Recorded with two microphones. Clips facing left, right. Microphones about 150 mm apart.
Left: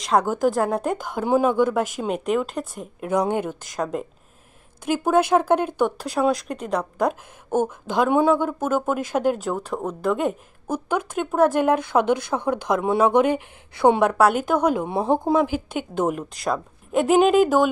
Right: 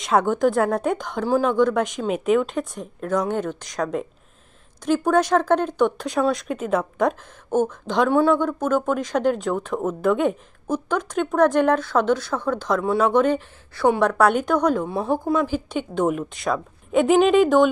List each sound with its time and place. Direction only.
0.0 s speech: centre (ahead or behind)
7.5 s speech: 10° left (ahead or behind)
14.1 s speech: 5° left (ahead or behind)
14.9 s speech: 20° left (ahead or behind); by 17.6 s 5° left (ahead or behind)